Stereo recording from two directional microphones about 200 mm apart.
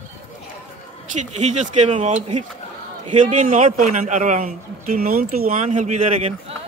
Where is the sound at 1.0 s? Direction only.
35° right (ahead or behind).